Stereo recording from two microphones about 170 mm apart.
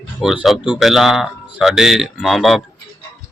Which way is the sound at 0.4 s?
5° right (ahead or behind).